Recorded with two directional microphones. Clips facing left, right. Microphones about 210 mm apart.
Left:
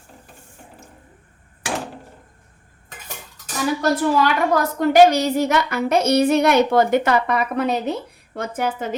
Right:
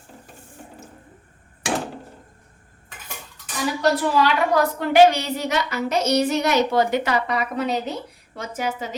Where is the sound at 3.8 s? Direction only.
45° left (ahead or behind).